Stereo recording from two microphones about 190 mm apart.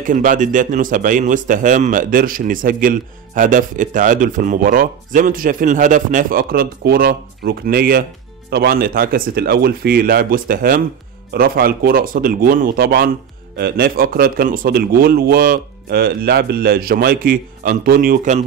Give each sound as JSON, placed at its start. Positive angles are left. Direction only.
{"t": 0.0, "sound": "a man's voice", "side_deg": -45}